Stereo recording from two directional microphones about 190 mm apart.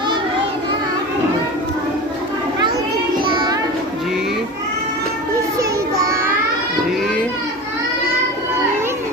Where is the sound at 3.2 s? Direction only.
25° right (ahead or behind).